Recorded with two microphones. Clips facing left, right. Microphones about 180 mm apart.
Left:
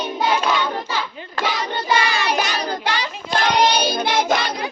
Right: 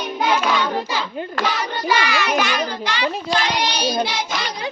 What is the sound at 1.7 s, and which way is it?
Child singing, 30° left (ahead or behind).